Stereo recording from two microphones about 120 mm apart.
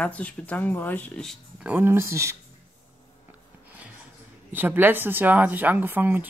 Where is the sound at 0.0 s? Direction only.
10° left (ahead or behind).